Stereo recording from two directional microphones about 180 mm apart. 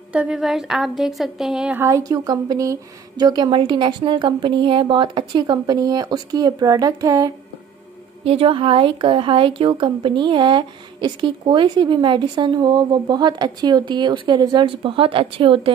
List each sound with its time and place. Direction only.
0.1 s a woman's voice: 5° right (ahead or behind)
1.8 s a woman's voice: 15° right (ahead or behind)
8.2 s a woman's voice: 35° right (ahead or behind)